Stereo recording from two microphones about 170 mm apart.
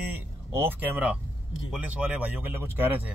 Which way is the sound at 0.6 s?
10° right (ahead or behind).